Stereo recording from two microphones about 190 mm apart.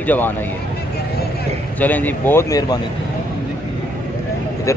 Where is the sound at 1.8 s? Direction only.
10° left (ahead or behind).